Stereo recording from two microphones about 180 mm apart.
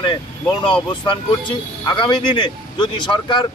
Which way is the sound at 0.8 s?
25° left (ahead or behind).